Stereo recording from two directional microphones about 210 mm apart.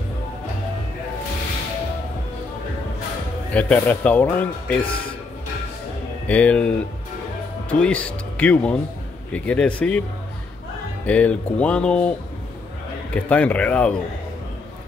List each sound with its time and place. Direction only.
3.5 s speech: 5° left (ahead or behind)
6.2 s speech: 5° left (ahead or behind)
7.8 s speech: 5° left (ahead or behind)
11.1 s speech: 5° left (ahead or behind)
13.1 s speech: 5° left (ahead or behind)